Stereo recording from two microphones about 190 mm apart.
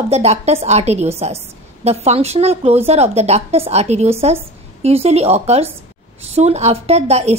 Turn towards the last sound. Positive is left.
turn(degrees=-35)  # may be behind; listen again after turning